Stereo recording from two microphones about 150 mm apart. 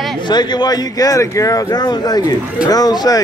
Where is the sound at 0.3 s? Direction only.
30° left (ahead or behind).